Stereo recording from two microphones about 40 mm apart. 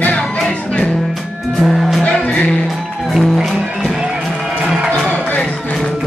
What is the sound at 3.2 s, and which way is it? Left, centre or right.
Music, centre.